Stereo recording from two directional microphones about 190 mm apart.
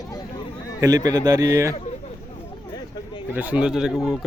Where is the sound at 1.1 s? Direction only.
20° right (ahead or behind).